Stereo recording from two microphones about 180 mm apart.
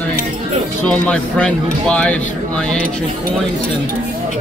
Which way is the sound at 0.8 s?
5° left (ahead or behind).